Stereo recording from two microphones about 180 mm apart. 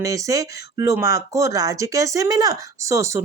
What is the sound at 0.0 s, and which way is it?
Speech, 20° right (ahead or behind).